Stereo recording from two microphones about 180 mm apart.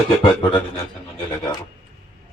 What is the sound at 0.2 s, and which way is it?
Beatboxing, 25° left (ahead or behind).